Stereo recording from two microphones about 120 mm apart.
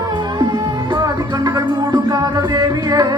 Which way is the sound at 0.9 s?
30° right (ahead or behind).